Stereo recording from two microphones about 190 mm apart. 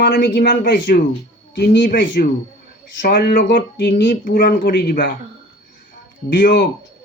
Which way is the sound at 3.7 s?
65° left (ahead or behind).